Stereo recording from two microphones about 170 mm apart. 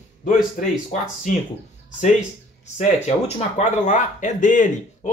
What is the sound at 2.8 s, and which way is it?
A man's voice, 40° left (ahead or behind).